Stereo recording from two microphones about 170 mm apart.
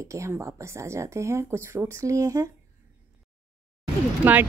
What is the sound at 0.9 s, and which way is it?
Speech, 15° right (ahead or behind).